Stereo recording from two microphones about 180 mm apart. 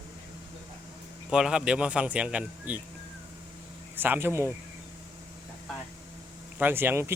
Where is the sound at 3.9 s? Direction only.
10° right (ahead or behind).